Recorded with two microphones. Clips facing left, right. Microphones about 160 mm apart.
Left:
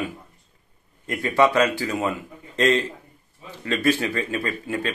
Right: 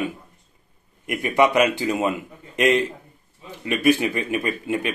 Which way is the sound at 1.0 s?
15° right (ahead or behind).